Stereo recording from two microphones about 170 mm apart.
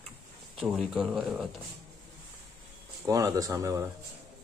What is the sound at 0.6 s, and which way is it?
Speech, centre (ahead or behind).